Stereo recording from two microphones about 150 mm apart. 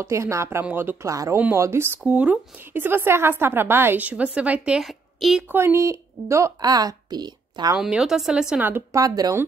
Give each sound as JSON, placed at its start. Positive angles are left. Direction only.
{"t": 0.0, "sound": "speech", "side_deg": -20}
{"t": 5.5, "sound": "a woman's voice", "side_deg": -15}
{"t": 7.7, "sound": "speech", "side_deg": -5}